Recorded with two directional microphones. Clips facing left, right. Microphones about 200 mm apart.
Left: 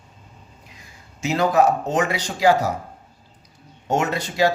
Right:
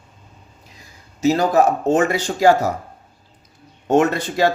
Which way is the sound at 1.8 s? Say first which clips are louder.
Right 5 dB; 50° right (ahead or behind).